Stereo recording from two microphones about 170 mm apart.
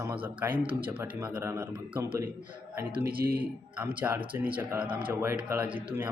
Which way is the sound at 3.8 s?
10° right (ahead or behind).